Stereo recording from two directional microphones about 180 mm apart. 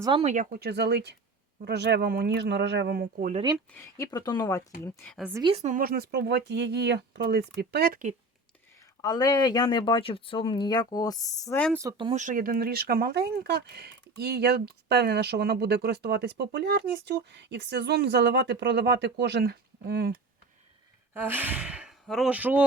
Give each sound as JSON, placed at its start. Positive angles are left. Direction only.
{"t": 0.0, "sound": "speech", "side_deg": -30}
{"t": 0.7, "sound": "speech", "side_deg": -70}
{"t": 3.7, "sound": "speech", "side_deg": 15}
{"t": 5.3, "sound": "a woman's voice", "side_deg": -25}
{"t": 5.5, "sound": "speech", "side_deg": -45}
{"t": 9.0, "sound": "speech", "side_deg": 20}
{"t": 11.7, "sound": "speech", "side_deg": -15}
{"t": 12.1, "sound": "speech", "side_deg": -45}
{"t": 21.1, "sound": "speech", "side_deg": -10}